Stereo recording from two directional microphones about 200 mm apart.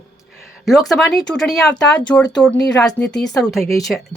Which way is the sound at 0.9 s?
Centre (ahead or behind).